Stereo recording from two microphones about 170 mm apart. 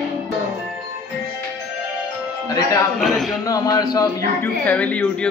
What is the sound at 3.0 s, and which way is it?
Speech, centre (ahead or behind).